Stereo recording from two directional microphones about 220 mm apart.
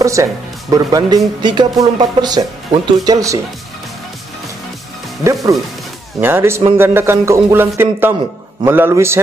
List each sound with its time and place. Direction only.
0.0 s speech: 15° right (ahead or behind)
5.2 s speech: 15° right (ahead or behind)